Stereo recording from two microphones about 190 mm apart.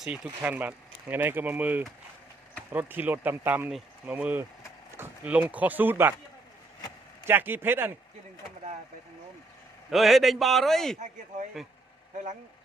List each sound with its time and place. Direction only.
0.0 s speech: 5° right (ahead or behind)
7.3 s speech: 10° right (ahead or behind)
9.9 s a man's voice: centre (ahead or behind)
10.9 s speech: 40° right (ahead or behind)